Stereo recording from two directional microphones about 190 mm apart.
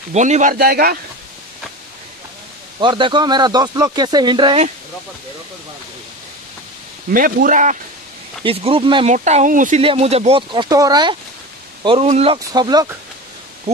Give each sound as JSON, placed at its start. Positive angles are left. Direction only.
{"t": 0.1, "sound": "a man's voice", "side_deg": -40}
{"t": 2.8, "sound": "speech", "side_deg": -25}
{"t": 7.1, "sound": "a man's voice", "side_deg": -50}
{"t": 8.5, "sound": "speech", "side_deg": -30}
{"t": 9.1, "sound": "speech", "side_deg": -40}